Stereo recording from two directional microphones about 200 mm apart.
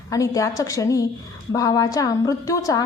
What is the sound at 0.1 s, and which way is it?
A woman's voice, 15° left (ahead or behind).